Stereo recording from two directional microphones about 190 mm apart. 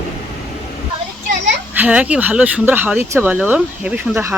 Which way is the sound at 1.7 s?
10° right (ahead or behind).